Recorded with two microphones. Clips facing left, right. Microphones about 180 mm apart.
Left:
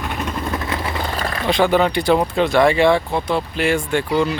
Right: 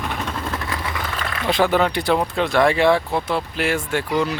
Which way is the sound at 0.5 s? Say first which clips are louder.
Left 3 dB; 20° left (ahead or behind).